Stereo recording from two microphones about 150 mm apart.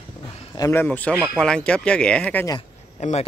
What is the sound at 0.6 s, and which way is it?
Speech, 15° left (ahead or behind).